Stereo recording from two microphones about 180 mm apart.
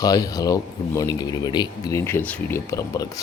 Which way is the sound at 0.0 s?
20° left (ahead or behind).